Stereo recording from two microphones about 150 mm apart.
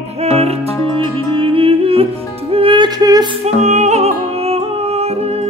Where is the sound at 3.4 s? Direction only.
50° right (ahead or behind).